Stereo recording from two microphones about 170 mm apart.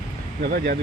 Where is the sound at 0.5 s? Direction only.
65° right (ahead or behind).